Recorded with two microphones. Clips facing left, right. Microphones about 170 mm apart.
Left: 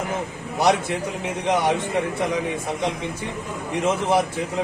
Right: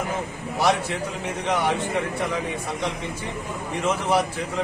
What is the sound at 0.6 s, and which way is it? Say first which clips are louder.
Speech: left 2 dB; 20° left (ahead or behind).